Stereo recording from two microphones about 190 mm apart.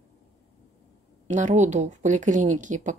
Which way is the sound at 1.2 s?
40° right (ahead or behind).